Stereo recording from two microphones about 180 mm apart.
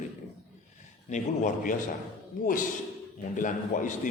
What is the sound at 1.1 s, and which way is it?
Speech, 45° left (ahead or behind).